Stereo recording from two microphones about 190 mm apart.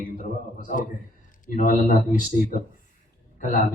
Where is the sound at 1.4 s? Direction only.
45° left (ahead or behind).